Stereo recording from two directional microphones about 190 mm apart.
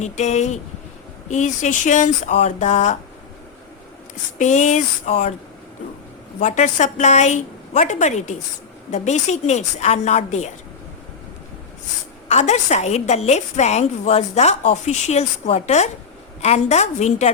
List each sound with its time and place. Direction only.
0.0 s a woman's voice: 35° left (ahead or behind)
4.4 s a woman's voice: 40° left (ahead or behind)
6.4 s a woman's voice: 40° left (ahead or behind)
12.3 s a woman's voice: 35° left (ahead or behind)